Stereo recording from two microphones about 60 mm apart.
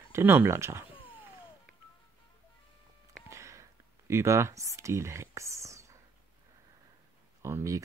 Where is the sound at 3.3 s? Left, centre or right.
Right.